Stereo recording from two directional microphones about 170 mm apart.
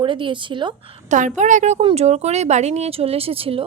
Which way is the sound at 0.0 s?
30° right (ahead or behind).